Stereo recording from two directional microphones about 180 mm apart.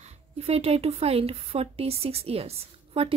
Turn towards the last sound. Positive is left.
turn(degrees=-35)  # may be behind; listen again after turning